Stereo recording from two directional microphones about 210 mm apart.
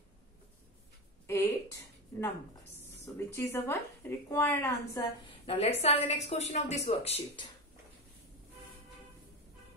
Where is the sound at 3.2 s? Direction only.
15° left (ahead or behind).